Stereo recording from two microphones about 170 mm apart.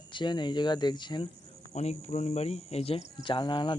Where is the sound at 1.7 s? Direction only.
40° left (ahead or behind).